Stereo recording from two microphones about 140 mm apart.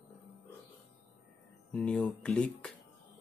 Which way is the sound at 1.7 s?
5° left (ahead or behind).